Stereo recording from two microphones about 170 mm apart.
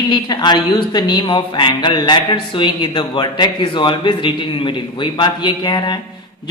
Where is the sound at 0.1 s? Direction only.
25° left (ahead or behind).